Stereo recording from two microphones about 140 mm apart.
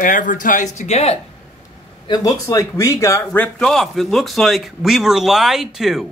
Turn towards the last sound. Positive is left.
turn(degrees=0)  # may be behind; listen again after turning